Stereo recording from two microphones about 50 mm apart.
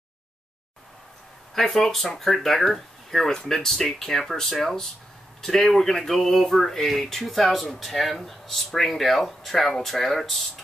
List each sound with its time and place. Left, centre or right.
1.5 s speech: centre